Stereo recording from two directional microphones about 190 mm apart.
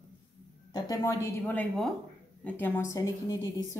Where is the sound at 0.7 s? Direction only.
20° left (ahead or behind).